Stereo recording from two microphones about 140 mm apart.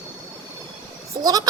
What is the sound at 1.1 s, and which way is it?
Speech, 25° right (ahead or behind).